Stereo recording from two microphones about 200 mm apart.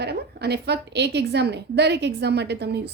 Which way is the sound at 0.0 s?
55° right (ahead or behind).